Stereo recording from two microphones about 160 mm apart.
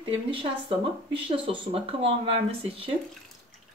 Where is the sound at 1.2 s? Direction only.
35° right (ahead or behind).